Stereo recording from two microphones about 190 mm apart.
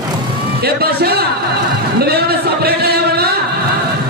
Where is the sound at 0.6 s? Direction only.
55° right (ahead or behind).